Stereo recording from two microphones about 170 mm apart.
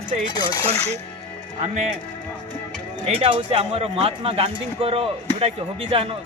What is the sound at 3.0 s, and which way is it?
A man's voice, 35° right (ahead or behind).